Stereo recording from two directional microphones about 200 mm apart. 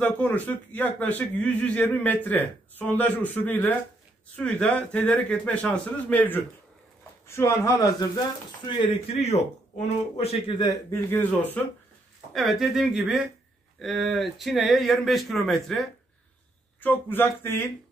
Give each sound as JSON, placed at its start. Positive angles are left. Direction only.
{"t": 0.0, "sound": "a man's voice", "side_deg": 10}